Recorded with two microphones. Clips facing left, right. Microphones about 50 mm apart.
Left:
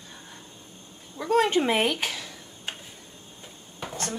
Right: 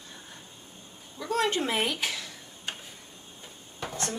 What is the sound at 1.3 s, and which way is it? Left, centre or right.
Speech, left.